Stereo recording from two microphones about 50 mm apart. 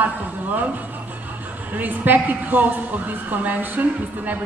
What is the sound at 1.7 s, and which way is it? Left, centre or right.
Speech, right.